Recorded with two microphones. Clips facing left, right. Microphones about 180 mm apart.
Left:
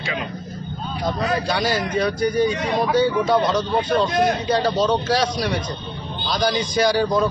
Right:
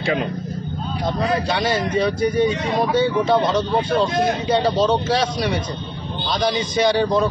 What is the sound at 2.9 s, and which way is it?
Speech, 25° right (ahead or behind).